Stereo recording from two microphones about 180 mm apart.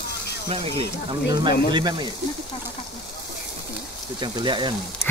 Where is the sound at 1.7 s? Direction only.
25° right (ahead or behind).